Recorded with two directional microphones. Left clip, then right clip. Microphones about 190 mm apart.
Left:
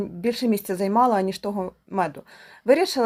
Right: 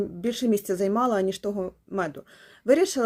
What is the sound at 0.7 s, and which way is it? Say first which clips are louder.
Speech: left 9 dB; 45° left (ahead or behind).